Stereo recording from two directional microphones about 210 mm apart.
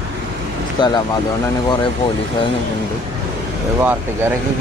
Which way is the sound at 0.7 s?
20° left (ahead or behind).